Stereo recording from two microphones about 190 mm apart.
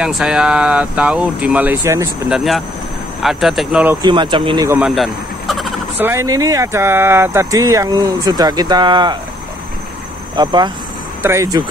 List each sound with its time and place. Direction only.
0.0 s speech: 5° right (ahead or behind)
2.2 s speech: centre (ahead or behind)
4.0 s speech: 25° right (ahead or behind)
4.6 s speech: 5° right (ahead or behind)
5.9 s speech: 15° right (ahead or behind)
10.3 s speech: 20° right (ahead or behind)